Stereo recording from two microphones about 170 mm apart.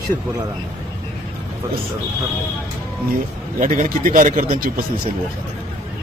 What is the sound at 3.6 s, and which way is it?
Speech, 50° right (ahead or behind).